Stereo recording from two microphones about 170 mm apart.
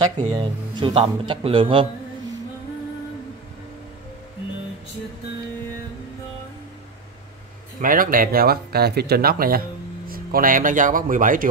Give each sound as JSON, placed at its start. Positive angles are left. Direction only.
{"t": 0.3, "sound": "a man's voice", "side_deg": -25}
{"t": 7.8, "sound": "speech", "side_deg": -55}